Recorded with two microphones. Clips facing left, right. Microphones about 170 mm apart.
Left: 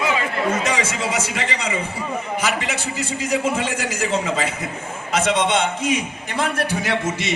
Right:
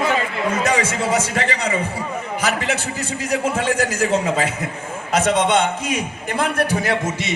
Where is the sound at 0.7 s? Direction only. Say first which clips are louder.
Right 4 dB; 40° right (ahead or behind).